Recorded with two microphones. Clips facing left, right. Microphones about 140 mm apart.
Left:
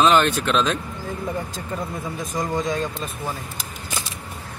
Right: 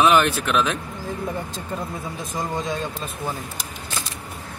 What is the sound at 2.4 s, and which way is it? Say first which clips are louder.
Speech: left 3 dB; 5° right (ahead or behind).